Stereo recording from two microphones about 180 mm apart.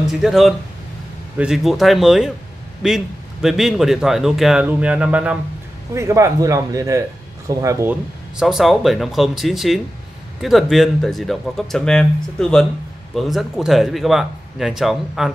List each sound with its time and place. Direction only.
0.0 s speech: centre (ahead or behind)
8.4 s speech: centre (ahead or behind)